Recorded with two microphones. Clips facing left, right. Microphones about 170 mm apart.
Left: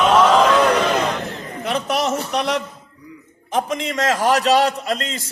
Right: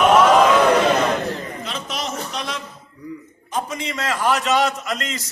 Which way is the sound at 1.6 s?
65° left (ahead or behind).